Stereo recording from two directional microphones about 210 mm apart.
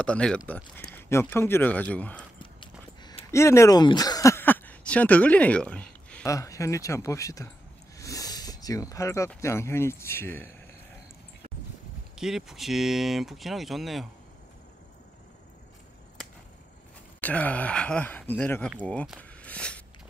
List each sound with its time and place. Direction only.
0.0 s speech: 5° left (ahead or behind)
3.0 s speech: 20° left (ahead or behind)
12.2 s speech: centre (ahead or behind)
17.2 s speech: 5° left (ahead or behind)
19.1 s a sound: 5° left (ahead or behind)